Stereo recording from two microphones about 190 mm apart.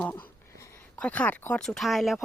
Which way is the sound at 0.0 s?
10° left (ahead or behind).